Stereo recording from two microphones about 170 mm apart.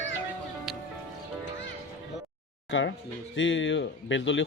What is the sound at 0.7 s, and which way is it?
Music, 5° right (ahead or behind).